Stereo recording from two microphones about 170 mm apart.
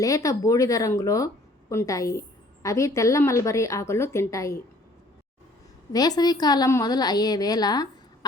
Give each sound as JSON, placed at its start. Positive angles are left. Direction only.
{"t": 0.0, "sound": "a woman's voice", "side_deg": 20}
{"t": 5.9, "sound": "a woman's voice", "side_deg": 25}